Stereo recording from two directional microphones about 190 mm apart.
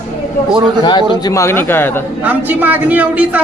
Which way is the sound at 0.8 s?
25° left (ahead or behind).